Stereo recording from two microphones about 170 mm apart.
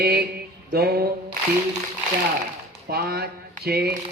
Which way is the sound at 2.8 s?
65° right (ahead or behind).